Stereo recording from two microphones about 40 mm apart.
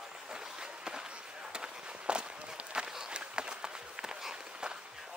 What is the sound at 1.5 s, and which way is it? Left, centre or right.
Walk, right.